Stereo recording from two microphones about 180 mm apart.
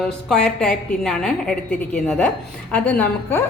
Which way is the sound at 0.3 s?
5° left (ahead or behind).